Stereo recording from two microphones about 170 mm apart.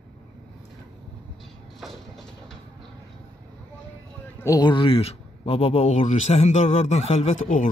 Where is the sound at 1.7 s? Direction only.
Centre (ahead or behind).